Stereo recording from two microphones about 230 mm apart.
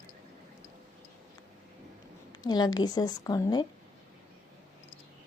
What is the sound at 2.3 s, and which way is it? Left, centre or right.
A woman's voice, centre.